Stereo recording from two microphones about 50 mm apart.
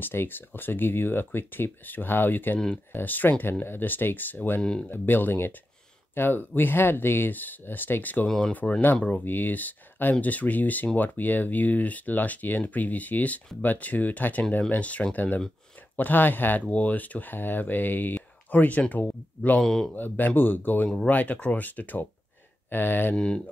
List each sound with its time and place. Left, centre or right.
0.0 s speech: left
4.6 s speech: centre
4.8 s speech: left
8.9 s speech: left
9.2 s speech: left
19.6 s speech: centre
20.0 s speech: left
23.1 s speech: centre